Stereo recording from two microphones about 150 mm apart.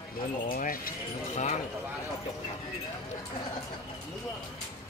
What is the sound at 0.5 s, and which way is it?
Speech, 70° left (ahead or behind).